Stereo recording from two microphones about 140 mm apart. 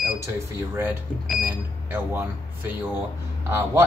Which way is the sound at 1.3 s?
10° right (ahead or behind).